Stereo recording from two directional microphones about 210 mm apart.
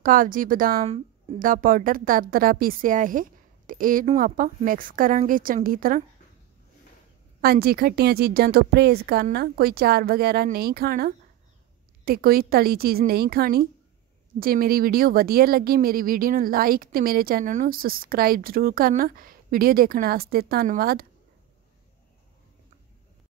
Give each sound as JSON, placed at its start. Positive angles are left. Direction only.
{"t": 0.0, "sound": "a woman's voice", "side_deg": -40}
{"t": 7.4, "sound": "speech", "side_deg": -45}